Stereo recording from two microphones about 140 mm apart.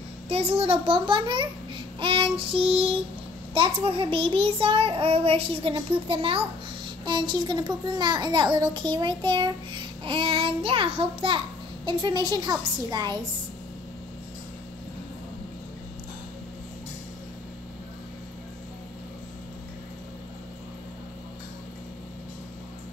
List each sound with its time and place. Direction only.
0.3 s a child's voice: 45° right (ahead or behind); by 13.2 s 30° right (ahead or behind)